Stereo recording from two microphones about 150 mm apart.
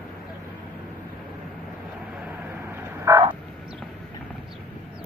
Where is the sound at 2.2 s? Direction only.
15° right (ahead or behind).